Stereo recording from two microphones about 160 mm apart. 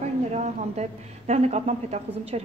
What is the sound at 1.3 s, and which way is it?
A woman's voice, 40° right (ahead or behind).